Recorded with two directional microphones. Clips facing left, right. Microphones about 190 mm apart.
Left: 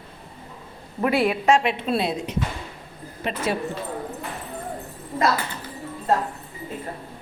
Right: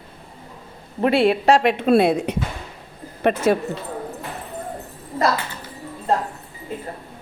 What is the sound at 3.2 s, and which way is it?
Speech, 45° right (ahead or behind).